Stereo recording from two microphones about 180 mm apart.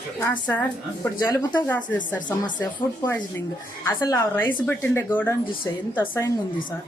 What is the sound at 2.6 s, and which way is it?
A woman's voice, 20° left (ahead or behind).